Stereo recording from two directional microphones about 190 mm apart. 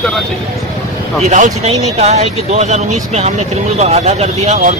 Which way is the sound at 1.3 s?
40° right (ahead or behind).